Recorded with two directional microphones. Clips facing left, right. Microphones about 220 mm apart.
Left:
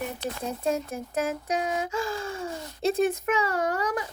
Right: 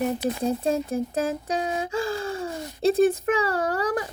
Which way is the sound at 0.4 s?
30° right (ahead or behind).